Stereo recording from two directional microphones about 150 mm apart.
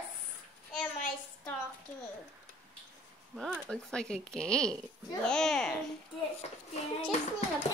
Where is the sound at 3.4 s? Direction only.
5° left (ahead or behind).